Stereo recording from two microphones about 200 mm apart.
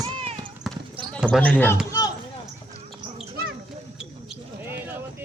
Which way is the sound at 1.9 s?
20° left (ahead or behind).